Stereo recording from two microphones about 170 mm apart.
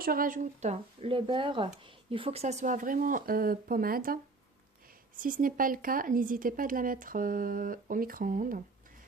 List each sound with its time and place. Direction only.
0.0 s speech: 55° right (ahead or behind)
5.2 s speech: 55° right (ahead or behind)